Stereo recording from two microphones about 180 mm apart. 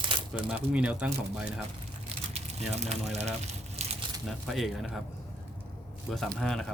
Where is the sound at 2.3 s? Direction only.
35° right (ahead or behind).